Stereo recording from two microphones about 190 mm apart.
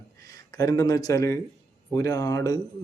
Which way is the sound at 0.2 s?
20° left (ahead or behind).